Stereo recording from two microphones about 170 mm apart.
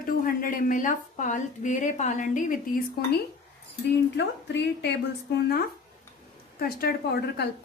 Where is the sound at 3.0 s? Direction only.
65° left (ahead or behind).